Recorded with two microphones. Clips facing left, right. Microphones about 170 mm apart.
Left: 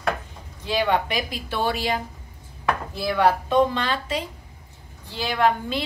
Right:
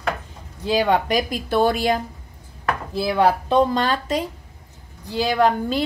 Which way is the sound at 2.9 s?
35° right (ahead or behind).